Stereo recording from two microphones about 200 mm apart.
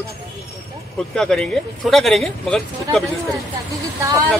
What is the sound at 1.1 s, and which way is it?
Speech, 5° left (ahead or behind).